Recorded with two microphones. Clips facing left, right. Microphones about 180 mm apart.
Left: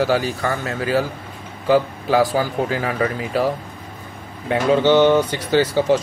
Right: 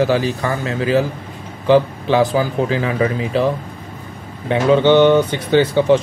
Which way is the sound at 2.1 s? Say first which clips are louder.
Even; 20° right (ahead or behind).